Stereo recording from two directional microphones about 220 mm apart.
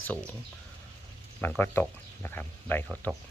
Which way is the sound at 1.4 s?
10° left (ahead or behind).